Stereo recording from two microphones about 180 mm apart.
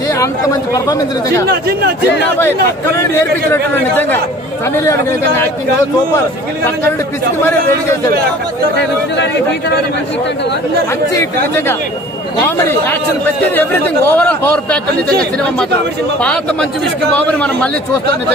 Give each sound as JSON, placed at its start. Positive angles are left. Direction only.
{"t": 0.2, "sound": "speech", "side_deg": 20}
{"t": 1.5, "sound": "speech", "side_deg": -60}
{"t": 4.7, "sound": "speech", "side_deg": 15}
{"t": 11.1, "sound": "speech", "side_deg": 15}
{"t": 14.1, "sound": "speech", "side_deg": 5}
{"t": 17.1, "sound": "speech", "side_deg": 5}